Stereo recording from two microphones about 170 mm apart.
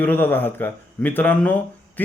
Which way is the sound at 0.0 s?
10° left (ahead or behind).